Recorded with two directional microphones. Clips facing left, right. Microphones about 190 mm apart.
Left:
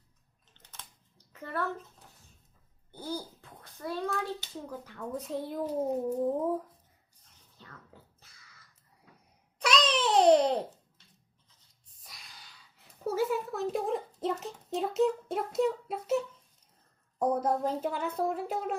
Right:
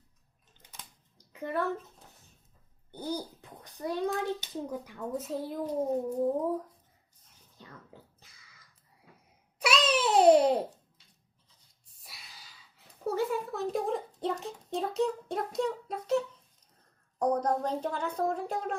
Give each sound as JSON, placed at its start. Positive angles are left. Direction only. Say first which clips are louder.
{"t": 0.5, "sound": "bathtub", "louder": "even", "side_deg": -10}
{"t": 2.9, "sound": "a child's voice", "louder": "right 2 dB", "side_deg": -15}
{"t": 4.9, "sound": "speech", "louder": "even", "side_deg": -5}
{"t": 7.6, "sound": "dog", "louder": "right 2 dB", "side_deg": -15}
{"t": 9.6, "sound": "babbling", "louder": "even", "side_deg": -5}
{"t": 12.0, "sound": "a woman's voice", "louder": "even", "side_deg": -5}